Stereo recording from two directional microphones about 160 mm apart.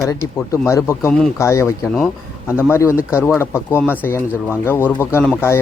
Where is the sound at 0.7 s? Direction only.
20° left (ahead or behind).